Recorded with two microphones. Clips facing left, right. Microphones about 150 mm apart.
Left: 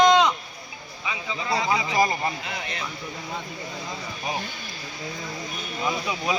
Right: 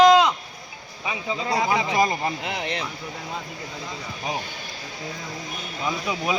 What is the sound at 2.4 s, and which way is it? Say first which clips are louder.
Speech: right 5 dB; 70° right (ahead or behind).